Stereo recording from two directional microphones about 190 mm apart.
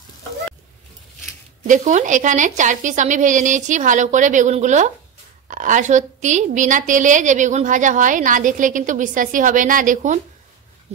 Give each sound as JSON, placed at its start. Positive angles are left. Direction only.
{"t": 1.7, "sound": "a woman's voice", "side_deg": -40}